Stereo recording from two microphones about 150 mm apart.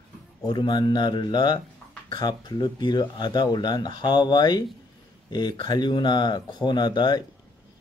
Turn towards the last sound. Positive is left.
turn(degrees=30)  # may be behind; listen again after turning